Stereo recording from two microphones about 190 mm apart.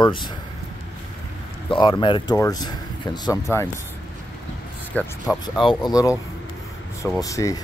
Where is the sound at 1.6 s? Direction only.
25° left (ahead or behind).